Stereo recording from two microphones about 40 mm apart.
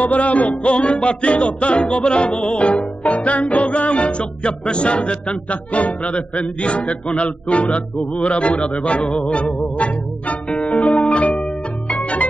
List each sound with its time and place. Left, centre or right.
0.0 s music: left